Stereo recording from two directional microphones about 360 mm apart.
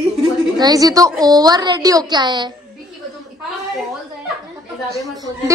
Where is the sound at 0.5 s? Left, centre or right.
Centre.